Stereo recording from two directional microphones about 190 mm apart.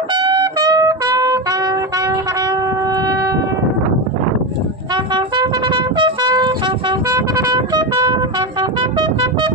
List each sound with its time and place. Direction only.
0.1 s music: 25° right (ahead or behind)
4.9 s trumpet: 25° right (ahead or behind)